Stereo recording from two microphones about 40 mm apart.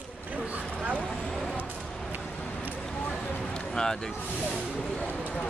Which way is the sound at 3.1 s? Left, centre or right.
Centre.